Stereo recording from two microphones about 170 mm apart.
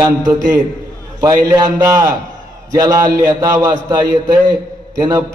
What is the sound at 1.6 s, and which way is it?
A man's voice, 20° right (ahead or behind).